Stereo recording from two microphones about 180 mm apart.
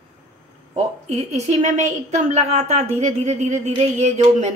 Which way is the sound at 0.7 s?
40° right (ahead or behind).